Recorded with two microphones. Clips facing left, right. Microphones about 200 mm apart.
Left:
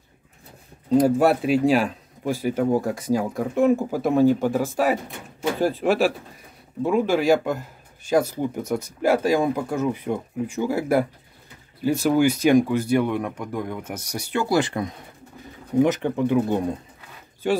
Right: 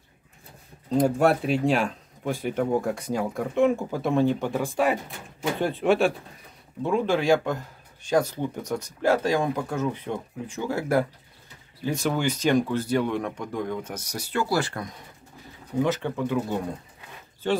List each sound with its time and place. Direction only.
0.8 s speech: 5° left (ahead or behind)